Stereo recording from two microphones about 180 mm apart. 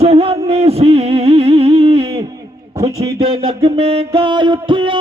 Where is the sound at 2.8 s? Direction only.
20° right (ahead or behind).